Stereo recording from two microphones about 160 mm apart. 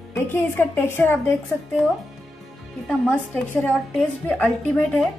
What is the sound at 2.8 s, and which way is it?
A woman's voice, 10° left (ahead or behind).